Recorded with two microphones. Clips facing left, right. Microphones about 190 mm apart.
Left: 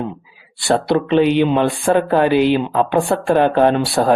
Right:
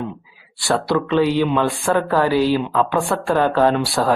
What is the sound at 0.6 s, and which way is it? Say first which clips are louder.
Speech: left 3 dB; 20° left (ahead or behind).